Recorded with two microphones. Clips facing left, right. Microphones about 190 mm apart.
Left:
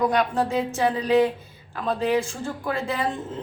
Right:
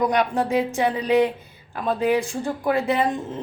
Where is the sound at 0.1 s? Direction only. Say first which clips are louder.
Right 2 dB; 20° right (ahead or behind).